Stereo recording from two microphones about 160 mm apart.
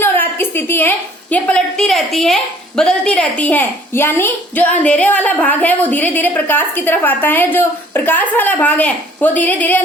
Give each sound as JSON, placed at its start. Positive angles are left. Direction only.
{"t": 0.0, "sound": "a woman's voice", "side_deg": 15}